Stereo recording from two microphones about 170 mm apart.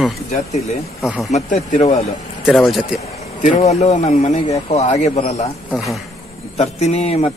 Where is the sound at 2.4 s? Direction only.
Centre (ahead or behind).